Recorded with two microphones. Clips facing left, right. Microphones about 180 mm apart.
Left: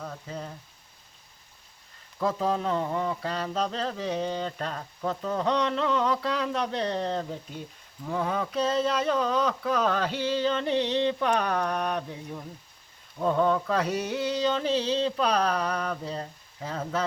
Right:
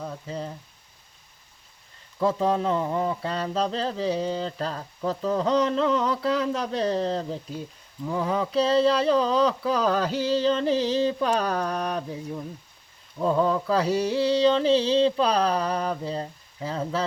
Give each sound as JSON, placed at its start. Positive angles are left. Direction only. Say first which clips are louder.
{"t": 0.0, "sound": "speech", "louder": "right 4 dB", "side_deg": -30}
{"t": 2.1, "sound": "speech", "louder": "right 4 dB", "side_deg": -35}
{"t": 13.2, "sound": "speech", "louder": "right 2 dB", "side_deg": -35}